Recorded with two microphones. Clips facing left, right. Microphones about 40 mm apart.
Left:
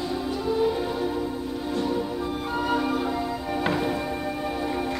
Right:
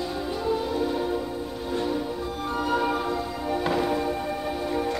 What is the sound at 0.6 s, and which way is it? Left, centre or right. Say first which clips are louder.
Music: left 2 dB; centre.